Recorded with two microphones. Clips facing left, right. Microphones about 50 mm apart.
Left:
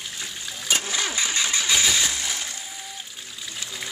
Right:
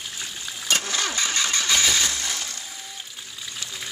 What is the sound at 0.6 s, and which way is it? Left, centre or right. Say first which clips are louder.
Engine starting: right 1 dB; centre.